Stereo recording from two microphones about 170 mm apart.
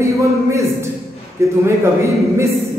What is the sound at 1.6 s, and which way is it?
Speech, 15° right (ahead or behind).